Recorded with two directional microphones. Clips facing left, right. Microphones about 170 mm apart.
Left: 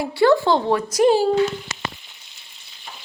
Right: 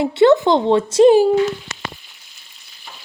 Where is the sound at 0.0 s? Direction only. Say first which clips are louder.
Right 4 dB; 20° right (ahead or behind).